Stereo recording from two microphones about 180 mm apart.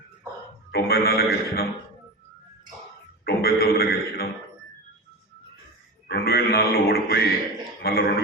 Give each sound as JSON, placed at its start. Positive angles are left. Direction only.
{"t": 0.7, "sound": "a man's voice", "side_deg": 60}
{"t": 3.2, "sound": "a man's voice", "side_deg": 60}
{"t": 6.1, "sound": "a man's voice", "side_deg": 60}